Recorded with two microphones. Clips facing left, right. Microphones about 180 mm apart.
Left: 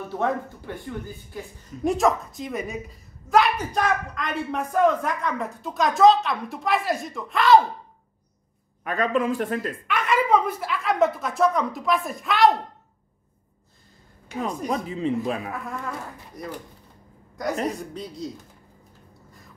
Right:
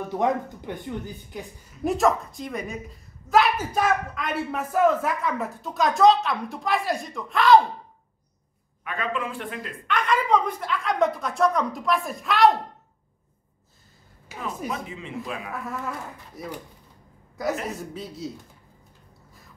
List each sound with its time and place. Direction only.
0.1 s speech: 15° right (ahead or behind)
1.9 s a woman's voice: centre (ahead or behind)
8.8 s speech: 40° left (ahead or behind)
9.8 s a woman's voice: 5° left (ahead or behind)
14.3 s speech: 5° right (ahead or behind)
14.7 s speech: 35° left (ahead or behind)
16.4 s a woman's voice: 5° right (ahead or behind)
17.6 s a woman's voice: 5° right (ahead or behind)